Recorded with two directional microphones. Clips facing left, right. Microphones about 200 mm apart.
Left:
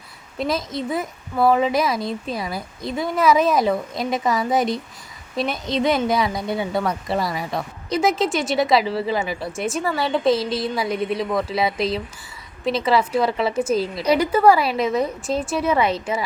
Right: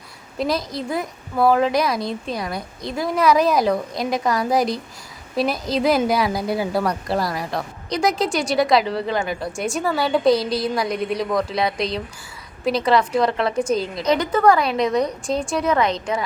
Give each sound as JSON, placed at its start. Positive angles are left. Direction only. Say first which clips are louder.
{"t": 0.3, "sound": "a woman's voice", "louder": "right 1 dB", "side_deg": 0}